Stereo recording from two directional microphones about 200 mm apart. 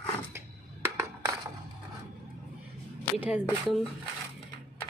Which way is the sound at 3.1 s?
5° right (ahead or behind).